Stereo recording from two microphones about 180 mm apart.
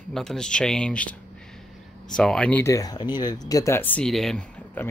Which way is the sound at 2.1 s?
5° left (ahead or behind).